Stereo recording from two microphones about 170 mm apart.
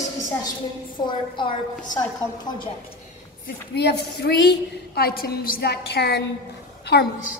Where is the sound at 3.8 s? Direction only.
75° left (ahead or behind).